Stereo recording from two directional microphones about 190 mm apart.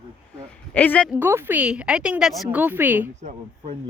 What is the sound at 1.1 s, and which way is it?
A woman's voice, 10° right (ahead or behind).